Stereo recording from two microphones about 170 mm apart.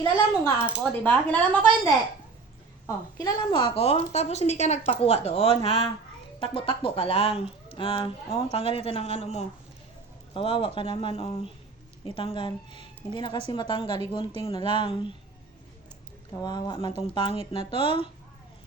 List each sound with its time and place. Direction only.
0.6 s speech: 10° left (ahead or behind)
2.8 s a woman's voice: 20° left (ahead or behind)
16.4 s a woman's voice: 25° left (ahead or behind)